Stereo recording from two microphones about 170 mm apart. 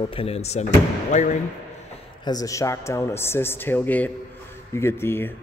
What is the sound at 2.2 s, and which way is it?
A man's voice, 20° left (ahead or behind).